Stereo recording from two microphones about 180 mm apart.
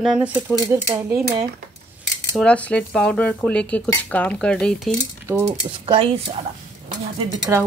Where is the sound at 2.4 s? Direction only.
5° left (ahead or behind).